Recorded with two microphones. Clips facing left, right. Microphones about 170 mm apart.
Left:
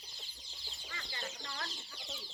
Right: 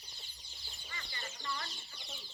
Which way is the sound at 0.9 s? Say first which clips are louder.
Left 3 dB; 90° left.